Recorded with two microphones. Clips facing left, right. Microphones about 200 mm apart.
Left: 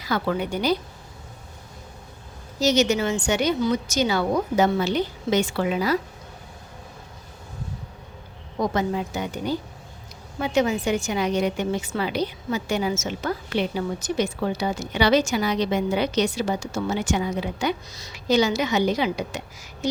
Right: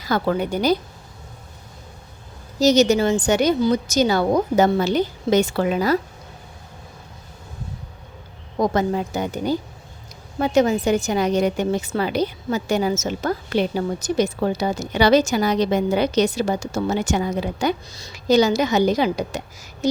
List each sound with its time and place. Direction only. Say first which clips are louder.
0.0 s a woman's voice: right 4 dB; 40° right (ahead or behind)
2.6 s a woman's voice: right 5 dB; 40° right (ahead or behind)
8.5 s a woman's voice: right 4 dB; 45° right (ahead or behind)